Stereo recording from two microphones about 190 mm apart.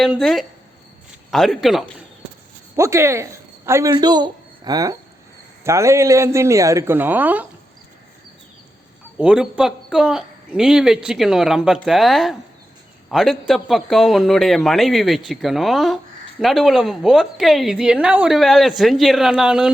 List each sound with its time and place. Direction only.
0.0 s a woman's voice: centre (ahead or behind)
2.7 s a woman's voice: 15° right (ahead or behind)
9.1 s a woman's voice: 5° right (ahead or behind)